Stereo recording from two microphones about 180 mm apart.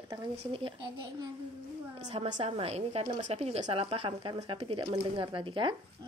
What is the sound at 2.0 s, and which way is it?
Speech, 35° right (ahead or behind).